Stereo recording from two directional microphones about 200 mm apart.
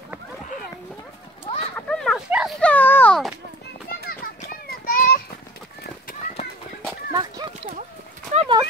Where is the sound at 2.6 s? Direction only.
10° left (ahead or behind).